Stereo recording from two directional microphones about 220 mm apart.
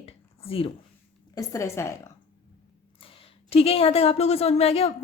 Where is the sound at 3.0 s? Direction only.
25° left (ahead or behind).